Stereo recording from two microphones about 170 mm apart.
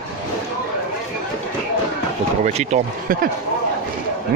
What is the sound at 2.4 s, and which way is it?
Speech, 45° right (ahead or behind).